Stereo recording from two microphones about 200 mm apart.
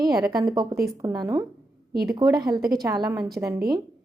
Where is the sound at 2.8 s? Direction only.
15° right (ahead or behind).